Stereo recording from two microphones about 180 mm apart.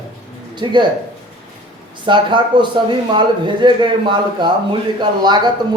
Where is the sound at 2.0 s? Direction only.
25° right (ahead or behind).